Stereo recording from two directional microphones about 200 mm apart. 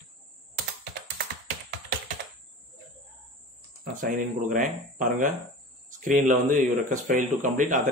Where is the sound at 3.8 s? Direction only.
40° right (ahead or behind).